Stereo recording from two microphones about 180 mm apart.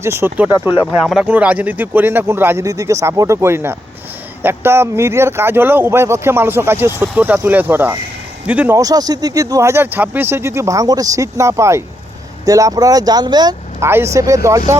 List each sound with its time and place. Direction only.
0.0 s speech: 15° right (ahead or behind)